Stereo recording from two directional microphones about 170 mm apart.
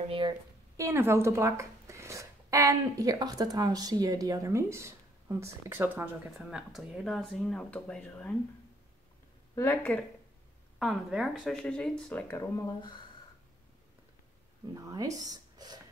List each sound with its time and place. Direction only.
0.7 s speech: 15° right (ahead or behind)
6.3 s speech: centre (ahead or behind)
9.6 s speech: 10° left (ahead or behind)
10.8 s speech: centre (ahead or behind); by 13.0 s 25° left (ahead or behind)
14.7 s speech: 20° right (ahead or behind)